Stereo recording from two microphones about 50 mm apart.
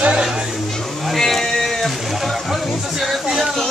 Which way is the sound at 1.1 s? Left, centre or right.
Centre.